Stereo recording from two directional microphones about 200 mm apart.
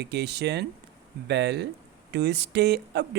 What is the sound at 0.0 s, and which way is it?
Speech, 55° right (ahead or behind).